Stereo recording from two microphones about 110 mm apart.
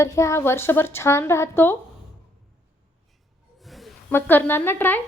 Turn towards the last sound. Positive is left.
turn(degrees=20)  # may be behind; listen again after turning